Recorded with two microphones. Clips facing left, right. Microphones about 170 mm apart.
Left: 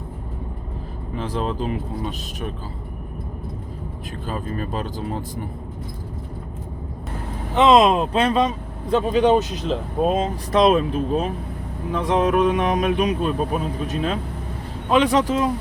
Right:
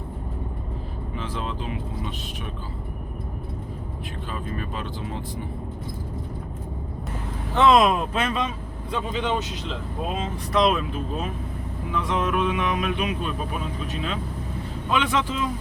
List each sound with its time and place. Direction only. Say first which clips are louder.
1.1 s speech: left 7 dB; 40° left (ahead or behind)
4.3 s speech: left 5 dB; 40° left (ahead or behind)
7.5 s speech: left 3 dB; 20° left (ahead or behind); by 15.4 s 40° left (ahead or behind)